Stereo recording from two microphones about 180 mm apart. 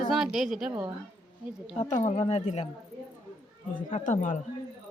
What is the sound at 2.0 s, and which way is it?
Speech, 35° left (ahead or behind).